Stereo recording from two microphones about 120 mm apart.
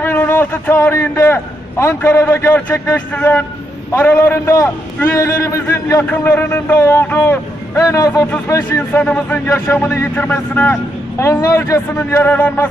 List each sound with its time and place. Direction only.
0.0 s a man's voice: 20° left (ahead or behind)